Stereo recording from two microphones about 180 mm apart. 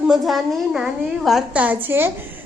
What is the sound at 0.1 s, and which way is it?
A woman's voice, centre (ahead or behind).